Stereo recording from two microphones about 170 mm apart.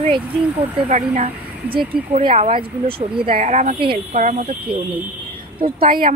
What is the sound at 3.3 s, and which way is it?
Speech, 45° right (ahead or behind).